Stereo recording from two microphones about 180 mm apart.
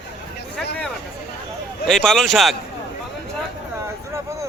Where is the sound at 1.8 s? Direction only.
5° left (ahead or behind).